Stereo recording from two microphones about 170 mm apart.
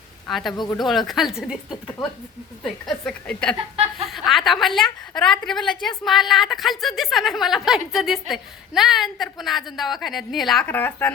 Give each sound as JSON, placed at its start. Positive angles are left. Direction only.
{"t": 0.3, "sound": "a woman's voice", "side_deg": 0}
{"t": 0.5, "sound": "speech", "side_deg": 25}
{"t": 0.8, "sound": "a woman's voice", "side_deg": 0}